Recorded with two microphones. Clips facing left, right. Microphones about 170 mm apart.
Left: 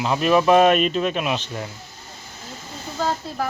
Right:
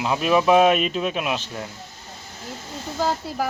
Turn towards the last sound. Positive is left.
turn(degrees=-10)  # may be behind; listen again after turning